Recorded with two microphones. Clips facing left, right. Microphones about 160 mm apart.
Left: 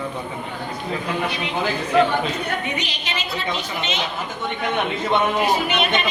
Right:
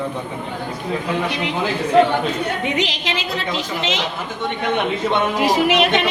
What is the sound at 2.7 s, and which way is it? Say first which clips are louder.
A woman's voice: right 6 dB; 90° right.